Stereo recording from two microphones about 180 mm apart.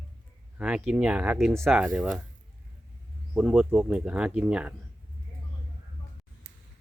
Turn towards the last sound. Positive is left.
turn(degrees=-65)  # may be behind; listen again after turning